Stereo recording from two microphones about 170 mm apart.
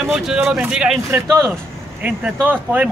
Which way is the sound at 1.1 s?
15° right (ahead or behind).